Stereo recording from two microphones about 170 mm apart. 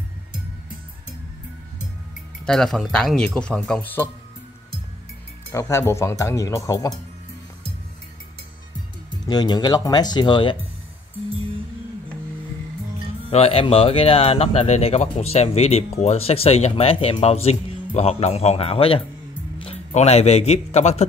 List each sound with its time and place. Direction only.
2.4 s speech: 5° left (ahead or behind)
5.5 s speech: 15° left (ahead or behind)
9.2 s speech: 25° left (ahead or behind)
13.3 s speech: 35° left (ahead or behind)